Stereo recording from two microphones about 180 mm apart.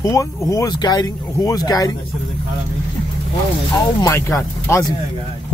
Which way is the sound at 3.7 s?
20° left (ahead or behind).